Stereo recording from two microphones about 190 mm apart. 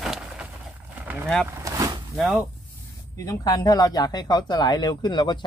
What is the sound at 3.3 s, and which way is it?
Speech, 20° left (ahead or behind).